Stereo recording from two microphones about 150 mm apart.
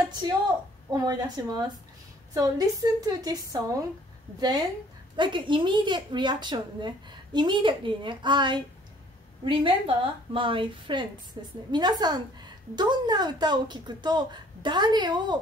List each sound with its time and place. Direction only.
0.8 s a woman's voice: 30° right (ahead or behind)